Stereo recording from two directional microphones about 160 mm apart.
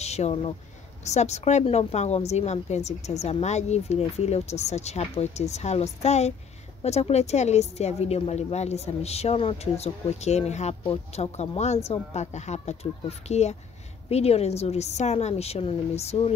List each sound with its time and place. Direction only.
0.0 s a woman's voice: 45° left (ahead or behind)